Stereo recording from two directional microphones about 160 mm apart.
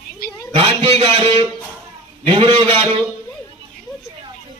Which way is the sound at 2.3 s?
30° right (ahead or behind).